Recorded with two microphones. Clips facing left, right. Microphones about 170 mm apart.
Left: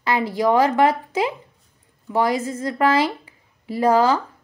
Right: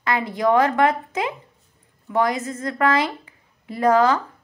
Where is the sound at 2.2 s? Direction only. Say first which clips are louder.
Left 1 dB; 30° left (ahead or behind).